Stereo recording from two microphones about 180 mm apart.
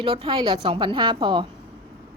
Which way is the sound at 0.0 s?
30° right (ahead or behind).